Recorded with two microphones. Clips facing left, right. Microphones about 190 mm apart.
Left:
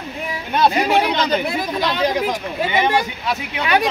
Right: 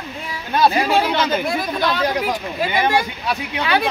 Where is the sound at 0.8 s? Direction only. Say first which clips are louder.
Even; 15° left (ahead or behind).